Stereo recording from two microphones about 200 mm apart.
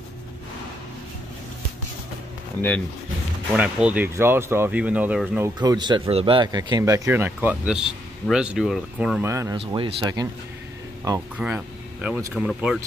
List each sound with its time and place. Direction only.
3.5 s speech: 5° right (ahead or behind)
5.6 s speech: 20° right (ahead or behind)
9.6 s speech: 25° right (ahead or behind)
11.3 s speech: 5° right (ahead or behind)